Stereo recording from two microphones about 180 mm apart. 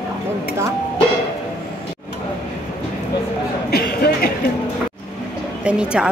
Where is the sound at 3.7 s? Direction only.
60° left (ahead or behind).